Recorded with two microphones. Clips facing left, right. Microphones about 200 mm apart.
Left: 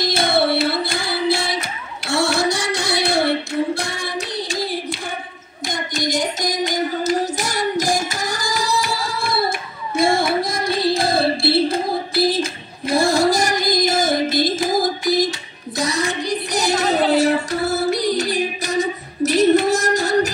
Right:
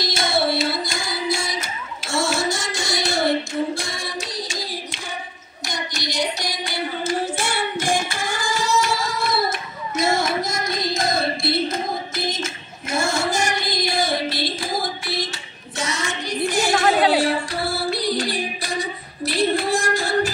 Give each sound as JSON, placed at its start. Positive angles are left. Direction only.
{"t": 0.0, "sound": "music", "side_deg": 55}
{"t": 2.0, "sound": "child singing", "side_deg": 65}
{"t": 5.7, "sound": "child singing", "side_deg": 50}
{"t": 7.3, "sound": "singing", "side_deg": 40}
{"t": 9.9, "sound": "music", "side_deg": 30}
{"t": 15.8, "sound": "child singing", "side_deg": 35}